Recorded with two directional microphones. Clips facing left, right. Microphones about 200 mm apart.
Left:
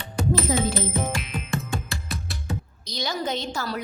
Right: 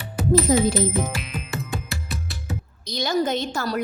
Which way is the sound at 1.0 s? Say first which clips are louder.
Right 1 dB; centre (ahead or behind).